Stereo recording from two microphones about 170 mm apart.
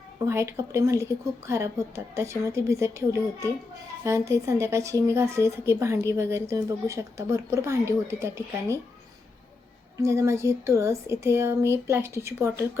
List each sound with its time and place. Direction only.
0.3 s speech: 15° right (ahead or behind)
10.0 s speech: 15° right (ahead or behind)